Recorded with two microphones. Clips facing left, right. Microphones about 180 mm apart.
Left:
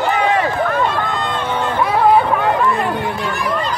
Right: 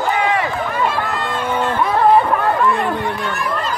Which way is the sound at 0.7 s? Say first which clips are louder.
Left 2 dB; 5° right (ahead or behind).